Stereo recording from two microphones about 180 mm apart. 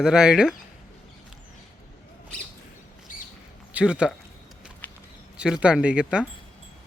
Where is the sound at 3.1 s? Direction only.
50° left (ahead or behind).